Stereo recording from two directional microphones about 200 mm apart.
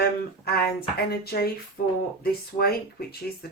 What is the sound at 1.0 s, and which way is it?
Speech, 50° left (ahead or behind).